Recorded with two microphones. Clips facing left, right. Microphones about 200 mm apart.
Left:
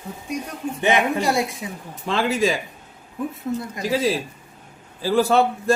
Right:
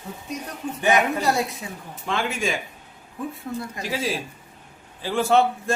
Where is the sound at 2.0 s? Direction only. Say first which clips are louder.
Left 5 dB; 35° left (ahead or behind).